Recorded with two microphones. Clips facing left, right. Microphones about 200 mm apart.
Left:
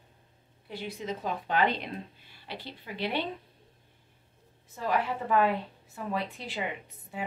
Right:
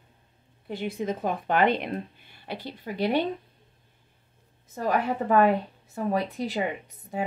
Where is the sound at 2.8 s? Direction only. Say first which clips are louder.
Right 8 dB; 45° right (ahead or behind).